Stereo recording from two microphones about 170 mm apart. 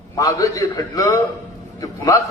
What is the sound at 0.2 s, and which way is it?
A man's voice, 20° left (ahead or behind).